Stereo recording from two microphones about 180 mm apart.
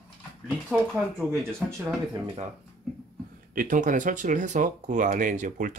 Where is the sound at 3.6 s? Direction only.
45° right (ahead or behind).